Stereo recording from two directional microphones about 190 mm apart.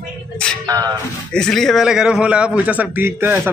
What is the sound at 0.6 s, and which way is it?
Speech, 20° right (ahead or behind).